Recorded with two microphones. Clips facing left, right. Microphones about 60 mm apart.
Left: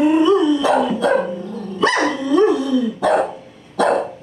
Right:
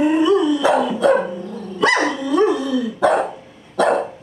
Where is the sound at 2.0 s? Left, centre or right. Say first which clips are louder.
Left 1 dB; centre.